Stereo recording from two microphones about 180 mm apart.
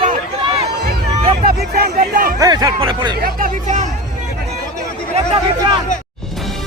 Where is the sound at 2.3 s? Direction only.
20° right (ahead or behind).